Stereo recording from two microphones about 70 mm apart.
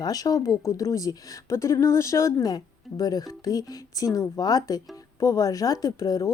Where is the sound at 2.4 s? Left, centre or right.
Left.